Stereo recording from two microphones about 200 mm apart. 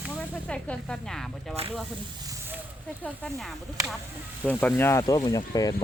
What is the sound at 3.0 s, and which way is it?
Speech, centre (ahead or behind).